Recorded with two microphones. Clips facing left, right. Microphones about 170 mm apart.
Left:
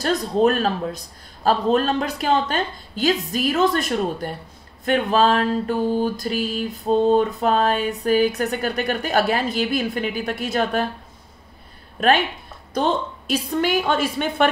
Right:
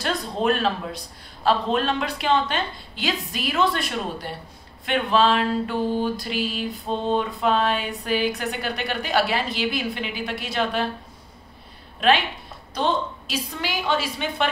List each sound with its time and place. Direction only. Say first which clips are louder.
0.0 s mantra: left 6 dB; 40° left (ahead or behind)
12.0 s mantra: left 2 dB; 50° left (ahead or behind)